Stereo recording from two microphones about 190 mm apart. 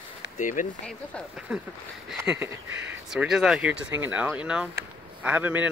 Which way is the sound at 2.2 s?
10° right (ahead or behind).